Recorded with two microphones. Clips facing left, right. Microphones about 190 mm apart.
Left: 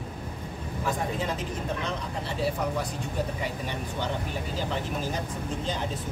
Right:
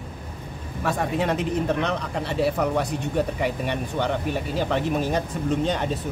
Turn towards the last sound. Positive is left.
turn(degrees=-65)  # may be behind; listen again after turning